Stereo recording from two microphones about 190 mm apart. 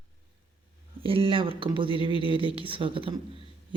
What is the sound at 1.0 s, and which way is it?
Speech, 30° right (ahead or behind).